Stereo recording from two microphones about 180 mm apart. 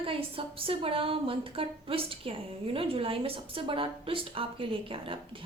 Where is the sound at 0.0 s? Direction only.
30° right (ahead or behind).